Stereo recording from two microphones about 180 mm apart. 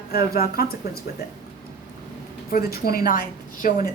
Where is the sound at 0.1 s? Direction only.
55° left (ahead or behind).